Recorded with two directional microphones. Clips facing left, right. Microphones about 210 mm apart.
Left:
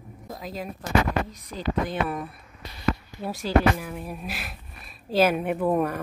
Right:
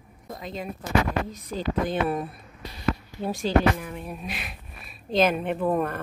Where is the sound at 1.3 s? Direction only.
25° right (ahead or behind).